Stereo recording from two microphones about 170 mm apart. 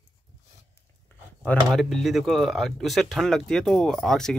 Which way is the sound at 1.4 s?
Centre (ahead or behind).